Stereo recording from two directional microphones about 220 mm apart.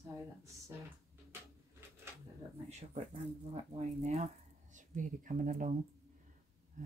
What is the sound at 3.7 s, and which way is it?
Speech, 30° right (ahead or behind).